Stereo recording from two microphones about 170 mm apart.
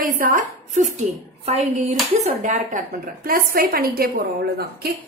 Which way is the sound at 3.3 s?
55° right (ahead or behind).